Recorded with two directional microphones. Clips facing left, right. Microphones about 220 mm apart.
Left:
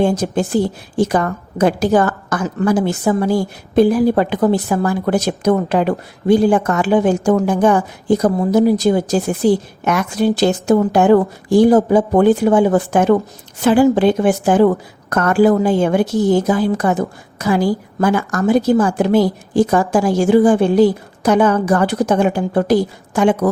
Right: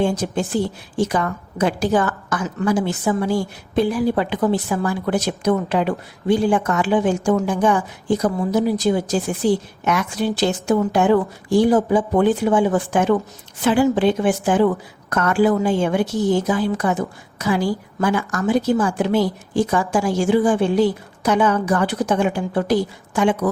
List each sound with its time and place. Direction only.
0.0 s a woman's voice: 40° left (ahead or behind)